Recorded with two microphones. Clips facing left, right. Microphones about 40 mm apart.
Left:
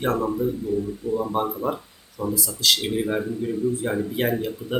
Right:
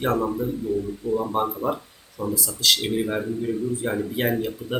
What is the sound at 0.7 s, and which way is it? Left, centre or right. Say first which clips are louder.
Speech: right 1 dB; right.